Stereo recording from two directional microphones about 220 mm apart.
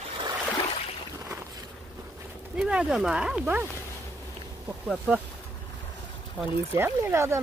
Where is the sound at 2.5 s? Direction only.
5° right (ahead or behind).